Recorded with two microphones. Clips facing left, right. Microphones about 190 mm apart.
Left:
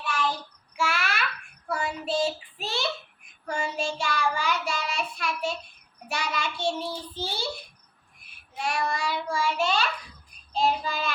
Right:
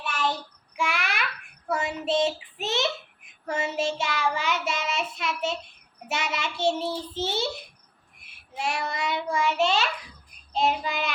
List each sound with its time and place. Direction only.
0.0 s child singing: 25° right (ahead or behind)
8.5 s child singing: 25° right (ahead or behind)